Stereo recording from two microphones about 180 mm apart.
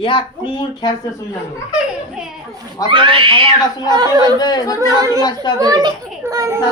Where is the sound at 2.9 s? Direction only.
30° right (ahead or behind).